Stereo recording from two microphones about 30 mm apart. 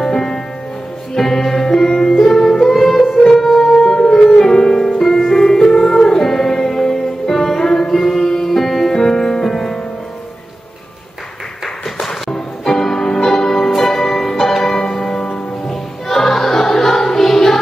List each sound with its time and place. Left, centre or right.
0.0 s music: centre
3.8 s music: left
5.0 s music: centre
8.9 s music: centre
12.0 s music: centre